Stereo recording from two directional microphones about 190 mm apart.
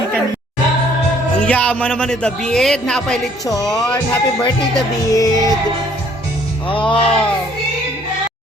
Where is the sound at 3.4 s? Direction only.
20° left (ahead or behind).